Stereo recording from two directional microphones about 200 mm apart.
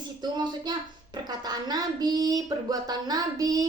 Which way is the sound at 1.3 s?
20° right (ahead or behind).